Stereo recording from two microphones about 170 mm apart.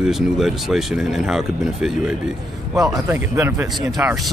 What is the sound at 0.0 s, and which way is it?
Speech, centre (ahead or behind).